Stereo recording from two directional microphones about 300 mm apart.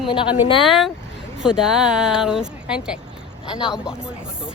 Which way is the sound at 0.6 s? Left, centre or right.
Centre.